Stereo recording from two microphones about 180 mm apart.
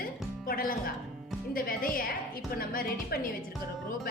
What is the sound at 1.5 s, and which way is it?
Speech, 50° left (ahead or behind).